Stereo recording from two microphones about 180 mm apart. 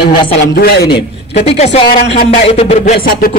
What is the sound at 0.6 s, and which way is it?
Speech, 65° left (ahead or behind).